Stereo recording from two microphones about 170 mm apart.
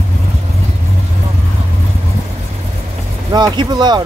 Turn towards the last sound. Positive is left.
turn(degrees=-25)  # may be behind; listen again after turning